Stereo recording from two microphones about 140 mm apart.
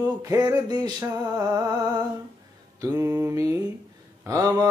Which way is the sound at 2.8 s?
20° right (ahead or behind).